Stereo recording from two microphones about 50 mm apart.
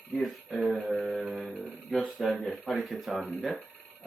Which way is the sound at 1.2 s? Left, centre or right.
Centre.